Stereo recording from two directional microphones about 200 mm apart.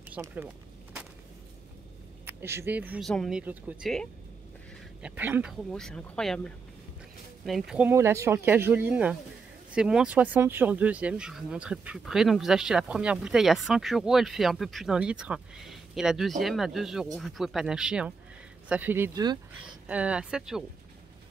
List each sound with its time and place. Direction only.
0.1 s speech: 10° right (ahead or behind)
2.2 s speech: 10° right (ahead or behind)
5.0 s speech: 10° right (ahead or behind)